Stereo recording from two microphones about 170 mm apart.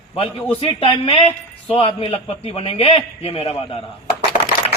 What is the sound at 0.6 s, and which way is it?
A man's voice, 30° left (ahead or behind).